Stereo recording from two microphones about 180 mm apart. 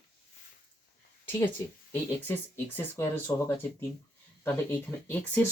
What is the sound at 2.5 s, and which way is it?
Speech, 15° left (ahead or behind).